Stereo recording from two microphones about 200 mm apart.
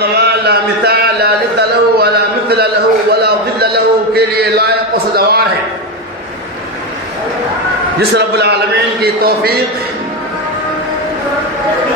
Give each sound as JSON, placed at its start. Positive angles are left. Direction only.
{"t": 0.0, "sound": "a sound", "side_deg": -55}
{"t": 2.5, "sound": "a man's voice", "side_deg": -55}
{"t": 8.1, "sound": "a man's voice", "side_deg": -55}